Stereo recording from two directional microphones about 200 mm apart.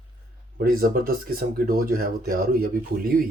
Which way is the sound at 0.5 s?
45° right (ahead or behind).